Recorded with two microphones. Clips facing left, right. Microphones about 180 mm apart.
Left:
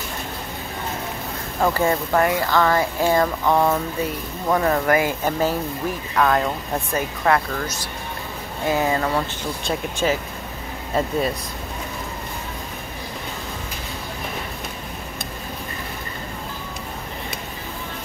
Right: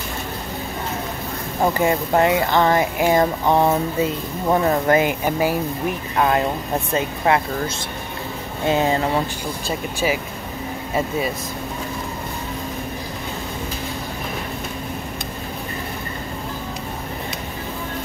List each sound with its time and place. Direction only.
1.6 s speech: 15° right (ahead or behind)
6.1 s speech: 25° right (ahead or behind)
9.7 s speech: 10° right (ahead or behind)